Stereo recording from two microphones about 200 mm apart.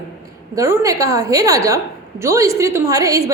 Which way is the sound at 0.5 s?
15° right (ahead or behind).